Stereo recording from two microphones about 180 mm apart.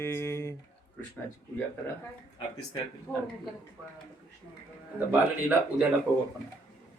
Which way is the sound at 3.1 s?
15° left (ahead or behind).